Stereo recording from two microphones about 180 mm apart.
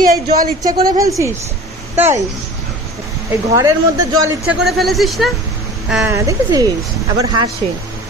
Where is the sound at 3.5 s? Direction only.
20° right (ahead or behind).